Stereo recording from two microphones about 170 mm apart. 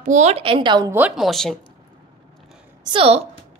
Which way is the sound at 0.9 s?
5° right (ahead or behind).